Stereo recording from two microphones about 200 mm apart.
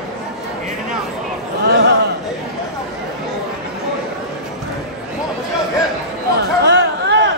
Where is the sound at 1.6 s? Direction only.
55° right (ahead or behind).